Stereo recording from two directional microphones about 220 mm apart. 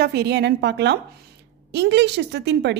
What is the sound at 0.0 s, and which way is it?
A woman's voice, 45° right (ahead or behind).